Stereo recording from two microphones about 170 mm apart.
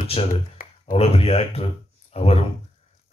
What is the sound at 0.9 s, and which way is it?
Speech, 35° left (ahead or behind).